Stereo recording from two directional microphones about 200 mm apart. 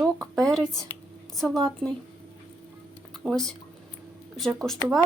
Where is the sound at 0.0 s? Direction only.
Centre (ahead or behind).